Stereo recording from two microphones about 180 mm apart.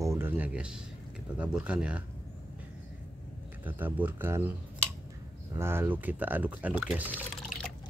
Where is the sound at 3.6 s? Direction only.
10° right (ahead or behind).